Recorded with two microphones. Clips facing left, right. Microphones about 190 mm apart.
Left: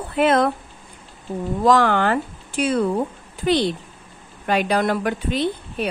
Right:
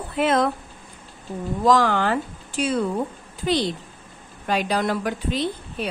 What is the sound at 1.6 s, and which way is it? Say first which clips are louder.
A woman's voice: left 2 dB; 60° left (ahead or behind).